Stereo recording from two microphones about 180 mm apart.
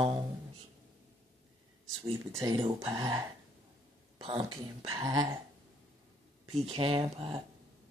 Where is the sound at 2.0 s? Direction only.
20° right (ahead or behind).